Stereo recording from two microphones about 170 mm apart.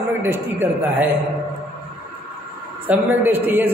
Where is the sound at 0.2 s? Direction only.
10° right (ahead or behind).